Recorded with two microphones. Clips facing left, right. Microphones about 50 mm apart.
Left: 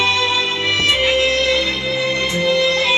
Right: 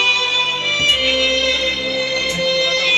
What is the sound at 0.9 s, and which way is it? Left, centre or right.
Music, left.